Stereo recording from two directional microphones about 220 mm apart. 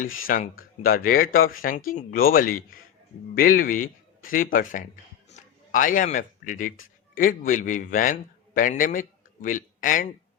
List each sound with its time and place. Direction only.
0.0 s speech: 40° left (ahead or behind)